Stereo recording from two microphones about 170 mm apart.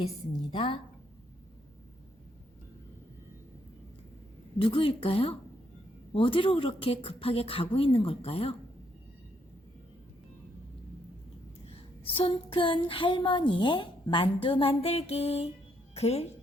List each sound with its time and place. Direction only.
0.5 s a woman's voice: 30° left (ahead or behind)
4.5 s a woman's voice: 30° left (ahead or behind)
12.0 s a woman's voice: 35° left (ahead or behind)